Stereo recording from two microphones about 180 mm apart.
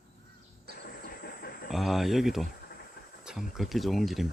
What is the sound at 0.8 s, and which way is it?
Train, 55° left (ahead or behind).